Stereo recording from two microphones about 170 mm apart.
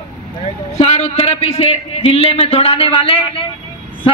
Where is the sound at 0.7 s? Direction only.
40° left (ahead or behind).